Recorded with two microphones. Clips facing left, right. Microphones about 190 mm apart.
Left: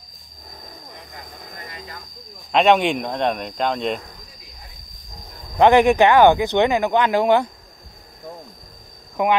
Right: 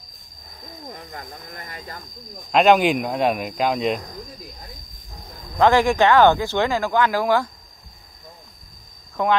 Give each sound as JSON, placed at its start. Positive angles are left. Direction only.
{"t": 2.5, "sound": "speech", "side_deg": 0}
{"t": 5.6, "sound": "speech", "side_deg": 20}
{"t": 9.1, "sound": "speech", "side_deg": 15}